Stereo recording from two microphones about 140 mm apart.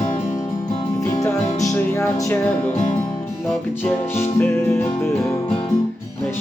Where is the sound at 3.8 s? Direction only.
15° left (ahead or behind).